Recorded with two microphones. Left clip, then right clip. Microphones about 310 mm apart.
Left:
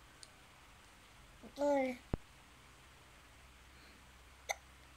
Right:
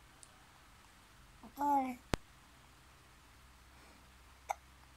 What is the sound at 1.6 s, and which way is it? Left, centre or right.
Speech, centre.